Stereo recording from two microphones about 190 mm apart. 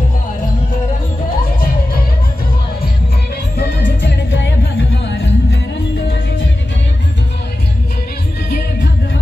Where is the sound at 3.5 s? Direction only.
60° left (ahead or behind).